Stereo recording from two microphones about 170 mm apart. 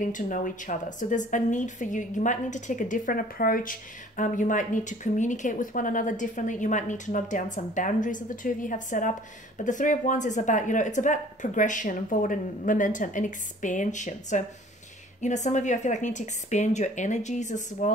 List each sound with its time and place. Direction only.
0.0 s speech: 50° left (ahead or behind)